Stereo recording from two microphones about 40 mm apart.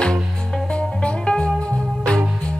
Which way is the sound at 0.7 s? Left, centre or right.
Left.